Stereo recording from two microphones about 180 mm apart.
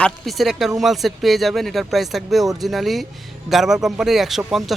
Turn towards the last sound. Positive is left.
turn(degrees=0)  # may be behind; listen again after turning